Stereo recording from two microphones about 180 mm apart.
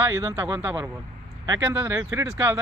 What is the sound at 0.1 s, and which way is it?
Speech, 20° right (ahead or behind).